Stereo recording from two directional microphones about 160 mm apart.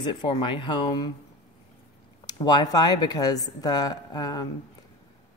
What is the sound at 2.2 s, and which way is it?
Speech, 25° left (ahead or behind).